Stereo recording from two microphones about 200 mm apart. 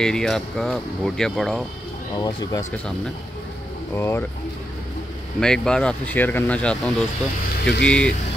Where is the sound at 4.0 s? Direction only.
10° left (ahead or behind).